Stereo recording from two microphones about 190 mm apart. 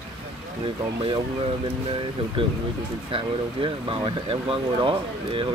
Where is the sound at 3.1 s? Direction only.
25° right (ahead or behind).